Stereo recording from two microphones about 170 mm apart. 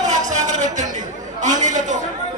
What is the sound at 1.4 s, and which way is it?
Speech, 45° right (ahead or behind).